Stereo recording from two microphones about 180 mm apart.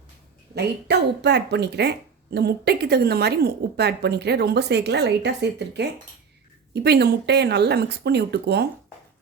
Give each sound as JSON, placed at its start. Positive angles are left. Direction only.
{"t": 0.5, "sound": "speech", "side_deg": -70}